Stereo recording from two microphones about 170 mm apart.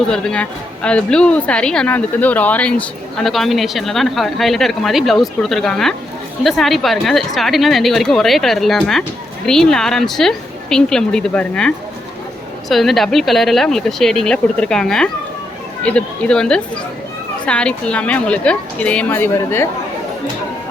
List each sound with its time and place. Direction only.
0.1 s a woman's voice: 5° left (ahead or behind)